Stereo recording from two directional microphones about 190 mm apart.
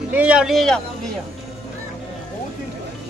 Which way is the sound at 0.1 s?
5° right (ahead or behind).